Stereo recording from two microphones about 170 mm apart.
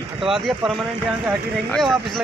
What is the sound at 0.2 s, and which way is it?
Speech, centre (ahead or behind).